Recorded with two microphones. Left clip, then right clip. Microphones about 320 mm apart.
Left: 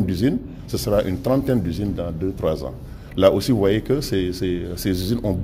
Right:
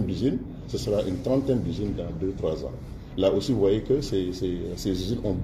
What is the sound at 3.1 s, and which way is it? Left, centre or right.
Speech, left.